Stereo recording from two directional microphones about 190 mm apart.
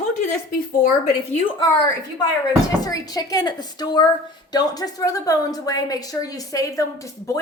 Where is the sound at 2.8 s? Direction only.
20° left (ahead or behind).